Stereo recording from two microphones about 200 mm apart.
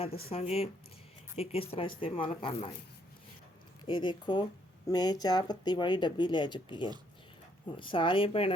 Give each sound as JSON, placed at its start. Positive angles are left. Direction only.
{"t": 0.3, "sound": "speech", "side_deg": 30}
{"t": 3.8, "sound": "speech", "side_deg": 25}